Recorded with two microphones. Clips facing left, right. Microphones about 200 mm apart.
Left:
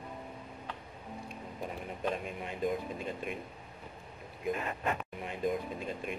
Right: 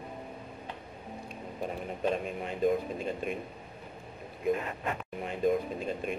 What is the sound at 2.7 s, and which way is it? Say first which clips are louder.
Speech: right 6 dB; 25° right (ahead or behind).